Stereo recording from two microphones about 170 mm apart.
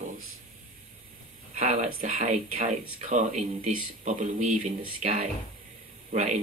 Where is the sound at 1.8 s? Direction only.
55° right (ahead or behind).